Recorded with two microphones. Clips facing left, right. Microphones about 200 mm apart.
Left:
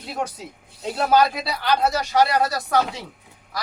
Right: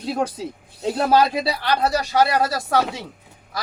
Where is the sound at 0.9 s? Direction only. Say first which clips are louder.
Right 1 dB; 30° right (ahead or behind).